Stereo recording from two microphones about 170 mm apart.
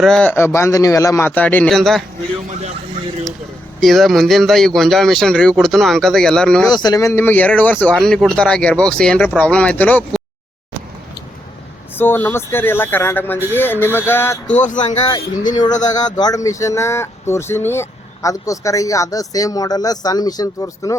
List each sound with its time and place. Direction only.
0.0 s speech: 5° left (ahead or behind)
3.8 s a man's voice: centre (ahead or behind)
6.7 s speech: 25° left (ahead or behind)
11.9 s speech: 10° left (ahead or behind)
14.5 s speech: 45° left (ahead or behind)
15.9 s speech: 25° left (ahead or behind)